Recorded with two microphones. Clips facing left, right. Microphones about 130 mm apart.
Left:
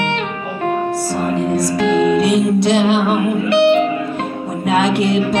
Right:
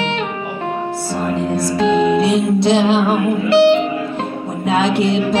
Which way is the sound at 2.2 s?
25° right (ahead or behind).